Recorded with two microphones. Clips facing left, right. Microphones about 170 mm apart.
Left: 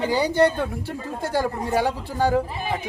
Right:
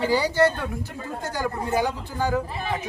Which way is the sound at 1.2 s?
30° left (ahead or behind).